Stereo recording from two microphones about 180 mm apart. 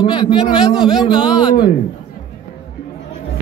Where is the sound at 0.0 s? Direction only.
25° left (ahead or behind).